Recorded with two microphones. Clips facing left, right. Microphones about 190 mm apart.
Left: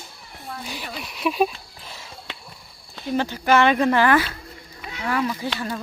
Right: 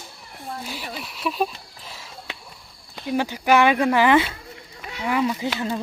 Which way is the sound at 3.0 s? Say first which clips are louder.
Even; 10° right (ahead or behind).